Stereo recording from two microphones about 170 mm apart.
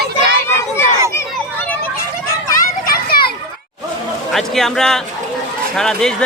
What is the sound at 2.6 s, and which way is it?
Children playing, 60° left (ahead or behind).